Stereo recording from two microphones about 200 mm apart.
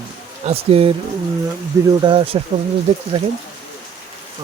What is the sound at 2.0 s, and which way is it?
Speech, 25° right (ahead or behind).